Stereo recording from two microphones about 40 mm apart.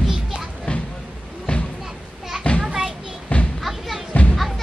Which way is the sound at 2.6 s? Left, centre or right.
Centre.